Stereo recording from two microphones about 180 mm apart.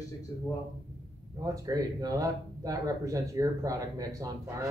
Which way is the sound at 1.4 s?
20° right (ahead or behind).